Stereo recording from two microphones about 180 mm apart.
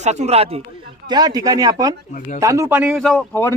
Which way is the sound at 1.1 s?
20° right (ahead or behind).